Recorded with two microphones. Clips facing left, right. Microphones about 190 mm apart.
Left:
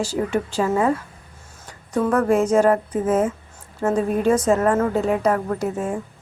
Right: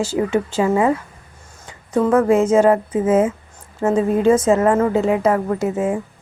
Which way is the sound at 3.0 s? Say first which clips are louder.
Right 4 dB; 90° right.